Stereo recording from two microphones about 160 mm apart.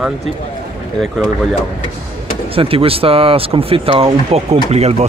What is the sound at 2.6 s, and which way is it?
Speech, 35° right (ahead or behind).